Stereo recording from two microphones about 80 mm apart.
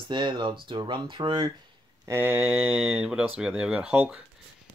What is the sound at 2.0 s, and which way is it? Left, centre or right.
Speech, right.